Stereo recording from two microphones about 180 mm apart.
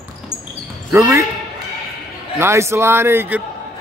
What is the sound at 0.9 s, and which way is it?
Speech, 15° right (ahead or behind).